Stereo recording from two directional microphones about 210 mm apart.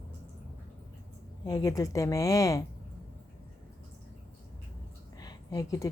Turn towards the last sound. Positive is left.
turn(degrees=15)  # may be behind; listen again after turning